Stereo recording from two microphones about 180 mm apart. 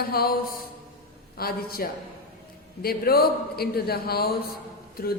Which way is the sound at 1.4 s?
55° left (ahead or behind).